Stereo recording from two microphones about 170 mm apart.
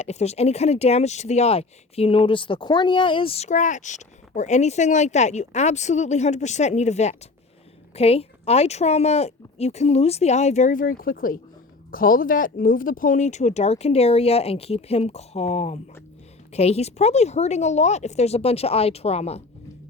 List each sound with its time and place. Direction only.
0.0 s speech: 40° left (ahead or behind)